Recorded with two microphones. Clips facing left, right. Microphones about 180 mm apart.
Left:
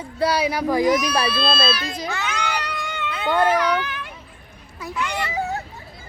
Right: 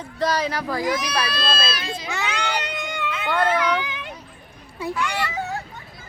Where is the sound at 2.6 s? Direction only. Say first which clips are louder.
Right 1 dB; 25° right (ahead or behind).